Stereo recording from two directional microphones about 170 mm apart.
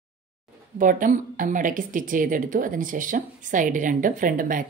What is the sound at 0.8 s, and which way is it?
A woman's voice, 50° right (ahead or behind).